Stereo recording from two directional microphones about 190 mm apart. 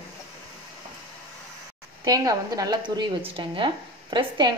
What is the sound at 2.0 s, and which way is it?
A woman's voice, 20° right (ahead or behind).